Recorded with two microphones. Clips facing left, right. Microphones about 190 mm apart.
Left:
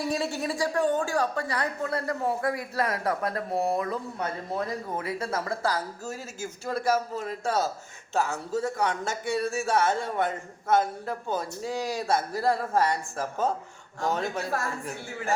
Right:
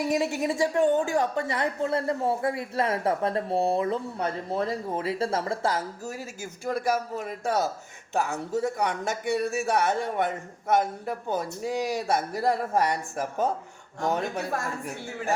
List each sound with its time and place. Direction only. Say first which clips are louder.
0.0 s a woman's voice: right 3 dB; 20° right (ahead or behind)